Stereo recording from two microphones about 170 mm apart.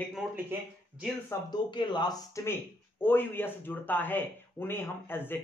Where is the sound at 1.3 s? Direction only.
25° left (ahead or behind).